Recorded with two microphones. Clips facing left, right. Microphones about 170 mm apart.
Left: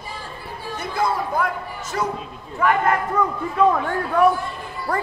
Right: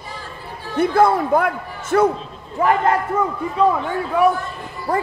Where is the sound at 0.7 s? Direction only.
55° right (ahead or behind).